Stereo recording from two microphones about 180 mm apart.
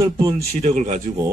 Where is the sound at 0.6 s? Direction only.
45° right (ahead or behind).